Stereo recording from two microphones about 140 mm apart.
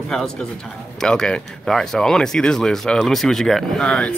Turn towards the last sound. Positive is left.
turn(degrees=5)  # may be behind; listen again after turning